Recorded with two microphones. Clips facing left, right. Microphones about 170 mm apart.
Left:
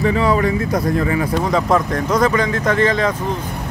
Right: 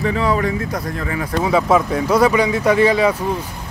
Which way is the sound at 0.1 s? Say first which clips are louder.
Left 2 dB; 15° left (ahead or behind).